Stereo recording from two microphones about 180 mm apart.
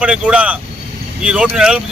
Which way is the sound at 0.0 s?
5° right (ahead or behind).